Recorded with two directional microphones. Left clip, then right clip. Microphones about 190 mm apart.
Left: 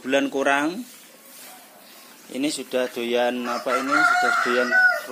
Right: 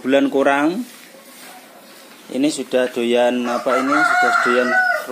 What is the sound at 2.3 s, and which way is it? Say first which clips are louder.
Speech: right 7 dB; 10° right (ahead or behind).